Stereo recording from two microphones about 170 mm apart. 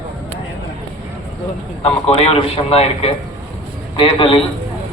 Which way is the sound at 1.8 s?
35° left (ahead or behind).